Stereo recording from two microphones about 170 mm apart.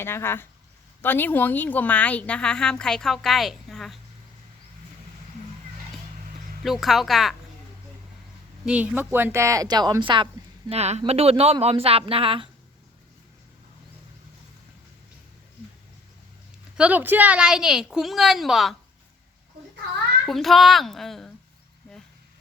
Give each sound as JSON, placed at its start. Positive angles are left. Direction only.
{"t": 0.0, "sound": "a woman's voice", "side_deg": 15}
{"t": 6.6, "sound": "a woman's voice", "side_deg": 0}
{"t": 8.6, "sound": "speech", "side_deg": -10}
{"t": 10.7, "sound": "speech", "side_deg": -40}
{"t": 16.7, "sound": "a woman's voice", "side_deg": -10}
{"t": 20.2, "sound": "a woman's voice", "side_deg": 0}